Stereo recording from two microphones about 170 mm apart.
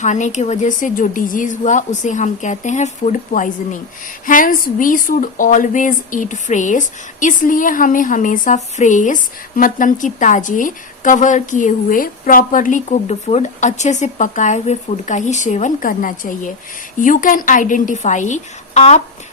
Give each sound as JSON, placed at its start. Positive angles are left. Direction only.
{"t": 0.0, "sound": "a woman's voice", "side_deg": 45}